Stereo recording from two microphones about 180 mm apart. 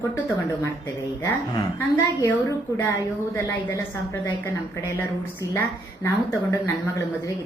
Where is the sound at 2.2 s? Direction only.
15° left (ahead or behind).